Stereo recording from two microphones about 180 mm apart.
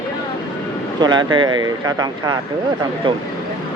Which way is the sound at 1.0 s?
25° right (ahead or behind).